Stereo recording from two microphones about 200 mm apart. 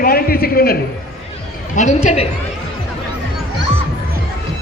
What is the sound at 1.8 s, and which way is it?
Speech, 35° left (ahead or behind).